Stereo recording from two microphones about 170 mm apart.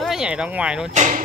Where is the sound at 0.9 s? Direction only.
45° right (ahead or behind).